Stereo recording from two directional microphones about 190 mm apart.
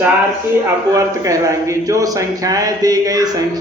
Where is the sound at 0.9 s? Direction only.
15° right (ahead or behind).